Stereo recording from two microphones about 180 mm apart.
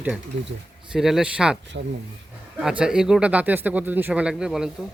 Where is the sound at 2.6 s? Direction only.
5° right (ahead or behind).